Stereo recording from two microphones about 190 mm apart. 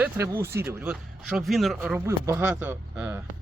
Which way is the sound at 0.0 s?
15° right (ahead or behind).